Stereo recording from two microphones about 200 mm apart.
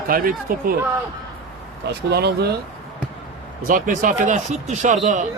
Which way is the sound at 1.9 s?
55° right (ahead or behind).